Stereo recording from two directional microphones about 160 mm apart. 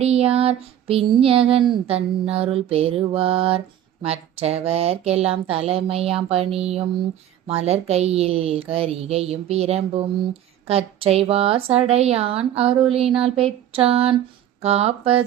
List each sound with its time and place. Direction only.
0.0 s female singing: 40° right (ahead or behind)